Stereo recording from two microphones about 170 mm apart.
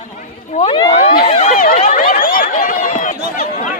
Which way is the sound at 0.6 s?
25° left (ahead or behind).